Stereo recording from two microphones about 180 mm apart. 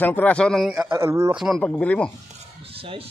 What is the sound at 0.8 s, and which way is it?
Speech, 15° right (ahead or behind).